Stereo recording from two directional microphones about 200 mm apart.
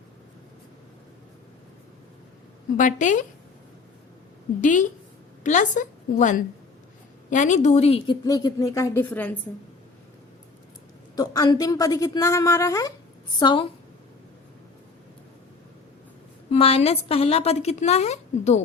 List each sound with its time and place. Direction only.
2.7 s a woman's voice: 40° left (ahead or behind)
4.6 s a woman's voice: 40° left (ahead or behind); by 9.3 s 10° left (ahead or behind)
11.1 s a woman's voice: 20° left (ahead or behind)
16.5 s a woman's voice: 30° left (ahead or behind)